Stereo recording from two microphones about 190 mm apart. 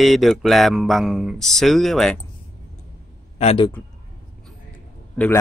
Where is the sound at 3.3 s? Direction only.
30° left (ahead or behind).